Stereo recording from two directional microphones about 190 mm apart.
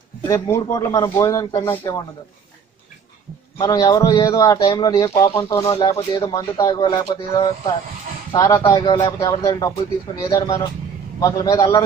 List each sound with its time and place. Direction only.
0.2 s a man's voice: 15° left (ahead or behind)
3.5 s a man's voice: 20° left (ahead or behind)